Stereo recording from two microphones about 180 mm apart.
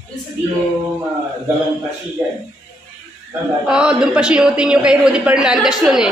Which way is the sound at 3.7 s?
5° right (ahead or behind).